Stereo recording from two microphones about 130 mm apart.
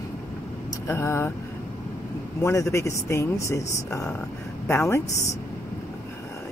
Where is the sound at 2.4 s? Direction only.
20° left (ahead or behind).